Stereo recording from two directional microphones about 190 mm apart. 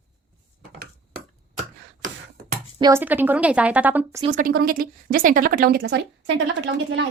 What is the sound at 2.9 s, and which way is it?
A woman's voice, 10° right (ahead or behind).